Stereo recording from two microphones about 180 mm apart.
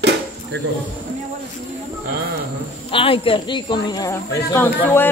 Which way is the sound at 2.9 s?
30° left (ahead or behind).